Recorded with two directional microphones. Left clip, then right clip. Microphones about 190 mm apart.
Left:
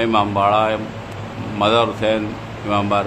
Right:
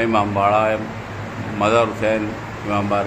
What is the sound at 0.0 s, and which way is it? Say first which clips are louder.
Speech: left 1 dB; 5° left (ahead or behind).